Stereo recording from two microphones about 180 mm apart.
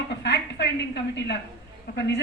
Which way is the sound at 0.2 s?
70° left (ahead or behind).